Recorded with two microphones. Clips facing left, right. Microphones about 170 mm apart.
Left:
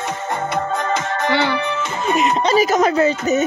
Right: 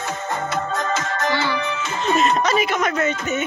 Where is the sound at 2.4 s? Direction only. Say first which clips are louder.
Left 5 dB; 35° left (ahead or behind).